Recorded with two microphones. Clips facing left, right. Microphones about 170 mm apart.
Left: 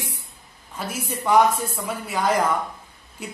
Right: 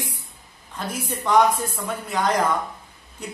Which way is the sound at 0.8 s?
10° left (ahead or behind).